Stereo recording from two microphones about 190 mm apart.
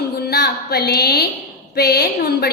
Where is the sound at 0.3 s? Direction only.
55° left (ahead or behind).